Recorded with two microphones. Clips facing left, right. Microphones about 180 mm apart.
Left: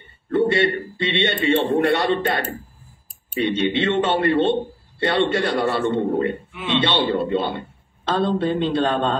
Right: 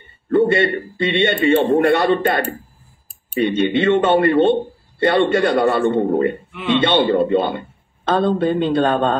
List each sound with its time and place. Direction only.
0.3 s a man's voice: 55° right (ahead or behind)